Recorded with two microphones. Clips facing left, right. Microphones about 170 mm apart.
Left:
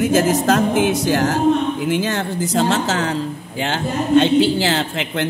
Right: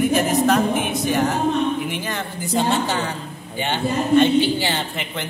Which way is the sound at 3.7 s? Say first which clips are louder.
Left 2 dB; 90° left.